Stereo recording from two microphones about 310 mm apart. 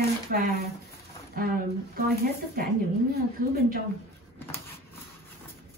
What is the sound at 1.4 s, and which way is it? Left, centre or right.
Speech, right.